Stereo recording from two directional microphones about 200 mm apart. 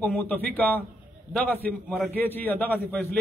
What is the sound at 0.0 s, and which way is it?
A man's voice, 10° left (ahead or behind).